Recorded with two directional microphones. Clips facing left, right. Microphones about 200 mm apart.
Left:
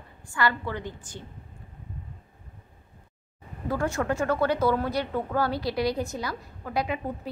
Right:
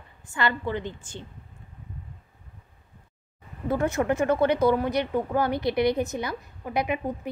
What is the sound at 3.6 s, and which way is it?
Speech, 20° right (ahead or behind).